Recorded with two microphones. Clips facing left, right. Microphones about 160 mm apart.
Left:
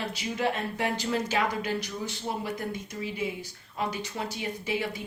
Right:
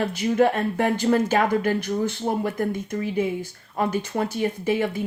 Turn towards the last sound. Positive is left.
turn(degrees=-50)  # may be behind; listen again after turning